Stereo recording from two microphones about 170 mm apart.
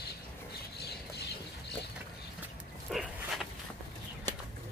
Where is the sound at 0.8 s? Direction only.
70° left (ahead or behind).